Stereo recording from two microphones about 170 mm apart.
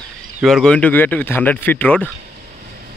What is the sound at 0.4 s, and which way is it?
Speech, centre (ahead or behind).